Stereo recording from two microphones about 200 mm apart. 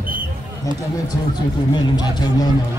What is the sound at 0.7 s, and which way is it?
A man's voice, 15° left (ahead or behind).